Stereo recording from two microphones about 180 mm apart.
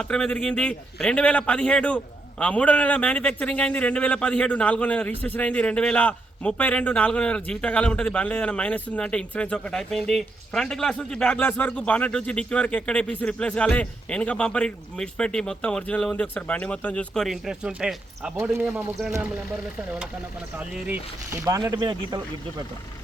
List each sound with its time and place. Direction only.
0.0 s a man's voice: 5° left (ahead or behind)
20.6 s speech: 5° right (ahead or behind)